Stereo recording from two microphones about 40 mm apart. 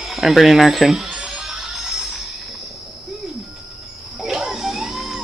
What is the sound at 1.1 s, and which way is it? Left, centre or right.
Music, centre.